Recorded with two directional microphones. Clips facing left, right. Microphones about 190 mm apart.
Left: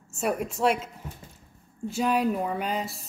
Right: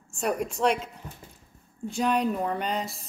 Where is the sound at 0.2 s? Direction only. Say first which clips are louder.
Even; 5° left (ahead or behind).